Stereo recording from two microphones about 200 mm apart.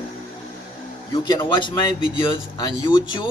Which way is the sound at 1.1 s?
20° left (ahead or behind).